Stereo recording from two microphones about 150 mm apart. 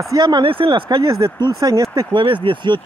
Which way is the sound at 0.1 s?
30° right (ahead or behind).